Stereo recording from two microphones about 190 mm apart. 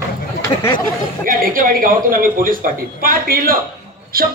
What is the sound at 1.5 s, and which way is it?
A man's voice, 45° right (ahead or behind).